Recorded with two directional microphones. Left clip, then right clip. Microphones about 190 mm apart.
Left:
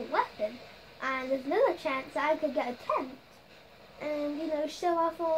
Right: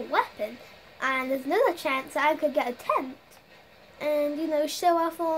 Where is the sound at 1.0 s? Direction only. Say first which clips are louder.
Right 5 dB; 50° right (ahead or behind).